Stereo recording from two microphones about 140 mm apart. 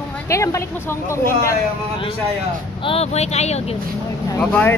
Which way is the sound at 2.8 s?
45° left (ahead or behind).